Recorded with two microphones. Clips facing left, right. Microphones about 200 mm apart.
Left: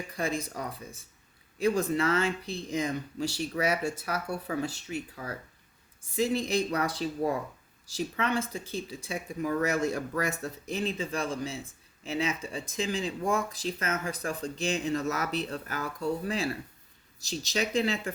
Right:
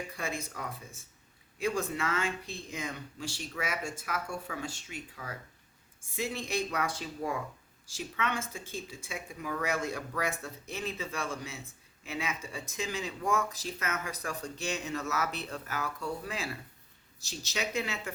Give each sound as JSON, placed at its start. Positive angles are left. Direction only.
{"t": 0.2, "sound": "speech", "side_deg": 35}
{"t": 10.7, "sound": "speech", "side_deg": 35}